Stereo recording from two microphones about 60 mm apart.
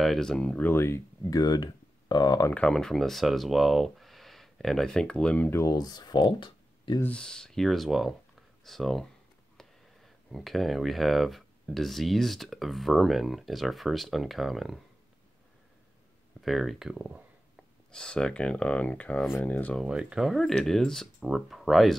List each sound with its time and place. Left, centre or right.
0.0 s speech: centre
0.7 s speech: left
1.3 s speech: left
2.5 s speech: centre
7.1 s speech: centre
16.3 s speech: centre
17.9 s speech: centre
19.9 s speech: centre
20.2 s speech: centre